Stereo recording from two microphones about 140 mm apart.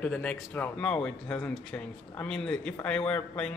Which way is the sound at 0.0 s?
10° left (ahead or behind).